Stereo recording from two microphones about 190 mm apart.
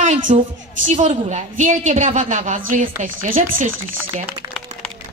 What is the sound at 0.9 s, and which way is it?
A woman's voice, 35° right (ahead or behind).